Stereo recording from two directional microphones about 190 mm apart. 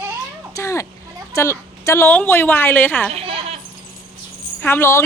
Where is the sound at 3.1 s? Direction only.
30° right (ahead or behind).